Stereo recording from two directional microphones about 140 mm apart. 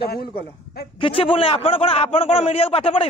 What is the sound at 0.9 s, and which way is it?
A man's voice, 40° left (ahead or behind).